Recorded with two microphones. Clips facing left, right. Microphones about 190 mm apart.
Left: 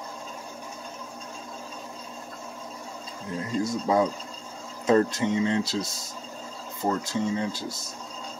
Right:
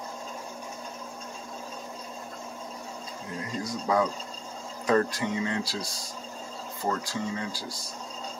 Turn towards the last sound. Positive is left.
turn(degrees=25)  # may be behind; listen again after turning